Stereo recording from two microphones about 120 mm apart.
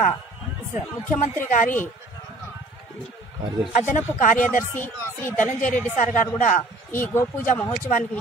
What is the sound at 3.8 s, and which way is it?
Speech, 90° left.